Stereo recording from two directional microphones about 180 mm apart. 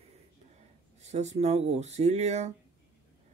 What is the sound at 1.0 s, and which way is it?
Speech, 40° right (ahead or behind).